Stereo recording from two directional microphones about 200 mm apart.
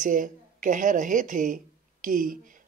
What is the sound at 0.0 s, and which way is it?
A woman's voice, 40° right (ahead or behind).